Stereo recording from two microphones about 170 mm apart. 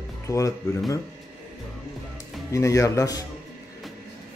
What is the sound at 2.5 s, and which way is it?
Speech, 20° left (ahead or behind).